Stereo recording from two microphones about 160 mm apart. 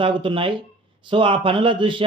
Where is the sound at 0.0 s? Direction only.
30° right (ahead or behind).